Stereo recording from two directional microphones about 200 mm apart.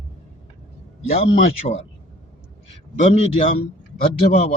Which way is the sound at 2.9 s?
30° left (ahead or behind).